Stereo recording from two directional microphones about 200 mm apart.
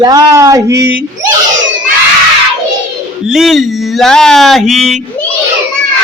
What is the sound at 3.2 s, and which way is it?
Speech, centre (ahead or behind).